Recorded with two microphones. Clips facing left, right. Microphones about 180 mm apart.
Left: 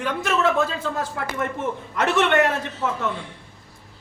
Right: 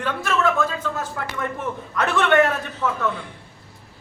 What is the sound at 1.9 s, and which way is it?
Speech, 20° left (ahead or behind).